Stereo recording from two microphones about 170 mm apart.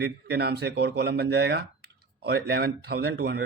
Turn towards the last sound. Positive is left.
turn(degrees=-70)  # may be behind; listen again after turning